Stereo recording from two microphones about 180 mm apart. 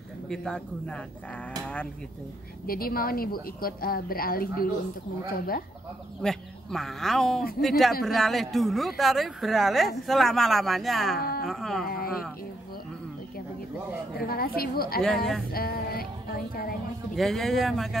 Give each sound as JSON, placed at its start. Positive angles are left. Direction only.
{"t": 0.3, "sound": "speech", "side_deg": 5}
{"t": 2.6, "sound": "a woman's voice", "side_deg": 55}
{"t": 6.2, "sound": "speech", "side_deg": 0}
{"t": 11.1, "sound": "a sound", "side_deg": 55}
{"t": 11.4, "sound": "speech", "side_deg": 0}
{"t": 14.2, "sound": "a woman's voice", "side_deg": 55}
{"t": 15.5, "sound": "a sound", "side_deg": 55}
{"t": 17.1, "sound": "speech", "side_deg": 0}